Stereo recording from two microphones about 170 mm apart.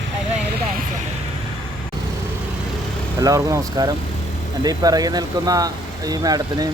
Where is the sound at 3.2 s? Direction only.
20° right (ahead or behind).